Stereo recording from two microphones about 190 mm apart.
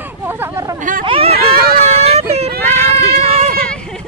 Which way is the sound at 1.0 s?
30° right (ahead or behind).